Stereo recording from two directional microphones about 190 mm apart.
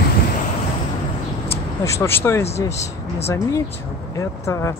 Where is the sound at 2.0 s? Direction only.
10° left (ahead or behind).